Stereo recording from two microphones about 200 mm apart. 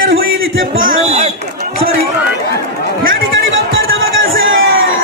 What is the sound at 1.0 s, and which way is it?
Speech, 35° right (ahead or behind).